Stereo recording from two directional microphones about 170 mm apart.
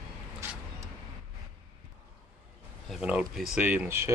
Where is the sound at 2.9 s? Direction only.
5° right (ahead or behind).